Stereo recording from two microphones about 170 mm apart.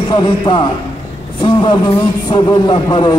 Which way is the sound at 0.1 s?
25° left (ahead or behind).